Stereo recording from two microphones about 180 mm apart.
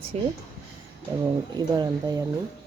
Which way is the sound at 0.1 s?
35° right (ahead or behind).